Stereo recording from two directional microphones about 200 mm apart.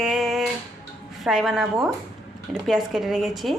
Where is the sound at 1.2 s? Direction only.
Centre (ahead or behind).